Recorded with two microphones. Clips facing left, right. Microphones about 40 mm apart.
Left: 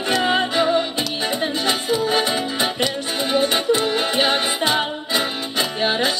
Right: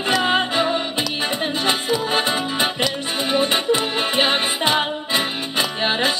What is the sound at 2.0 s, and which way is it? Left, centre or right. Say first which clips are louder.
Music: left 1 dB; right.